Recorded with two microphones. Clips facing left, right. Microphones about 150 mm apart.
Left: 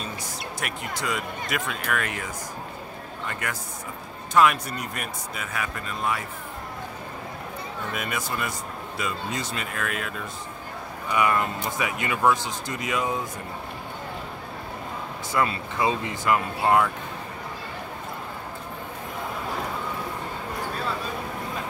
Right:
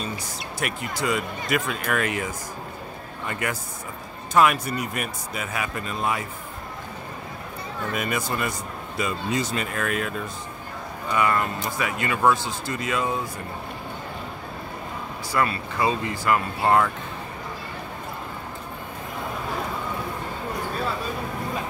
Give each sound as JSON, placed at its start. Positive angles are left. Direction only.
{"t": 0.6, "sound": "a man's voice", "side_deg": 0}
{"t": 3.3, "sound": "a man's voice", "side_deg": -10}
{"t": 5.5, "sound": "speech", "side_deg": -15}
{"t": 7.9, "sound": "a man's voice", "side_deg": 0}
{"t": 11.1, "sound": "speech", "side_deg": 15}
{"t": 15.3, "sound": "speech", "side_deg": 20}
{"t": 16.6, "sound": "a man's voice", "side_deg": 5}